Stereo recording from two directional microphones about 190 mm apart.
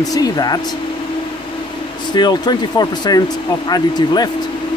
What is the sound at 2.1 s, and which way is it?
Speech, 20° left (ahead or behind).